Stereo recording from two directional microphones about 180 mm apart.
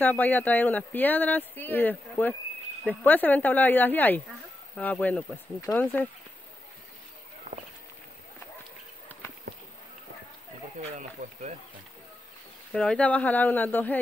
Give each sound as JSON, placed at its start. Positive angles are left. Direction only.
{"t": 0.0, "sound": "speech", "side_deg": 10}
{"t": 9.1, "sound": "a sound", "side_deg": 10}
{"t": 10.8, "sound": "speech", "side_deg": -40}
{"t": 12.7, "sound": "speech", "side_deg": 5}